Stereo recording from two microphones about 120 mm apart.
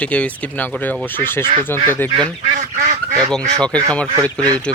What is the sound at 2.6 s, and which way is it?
Goose, 90° right.